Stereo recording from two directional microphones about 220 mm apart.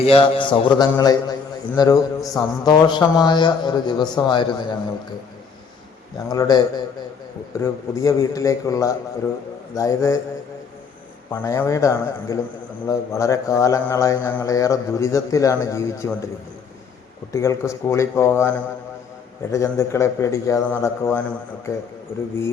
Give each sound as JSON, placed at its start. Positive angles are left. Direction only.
{"t": 0.0, "sound": "a man's voice", "side_deg": 25}
{"t": 6.1, "sound": "a man's voice", "side_deg": 15}
{"t": 7.6, "sound": "a man's voice", "side_deg": 15}
{"t": 11.3, "sound": "a man's voice", "side_deg": 10}
{"t": 17.3, "sound": "a man's voice", "side_deg": 15}